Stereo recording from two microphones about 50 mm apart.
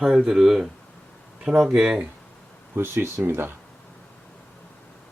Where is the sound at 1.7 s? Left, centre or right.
Centre.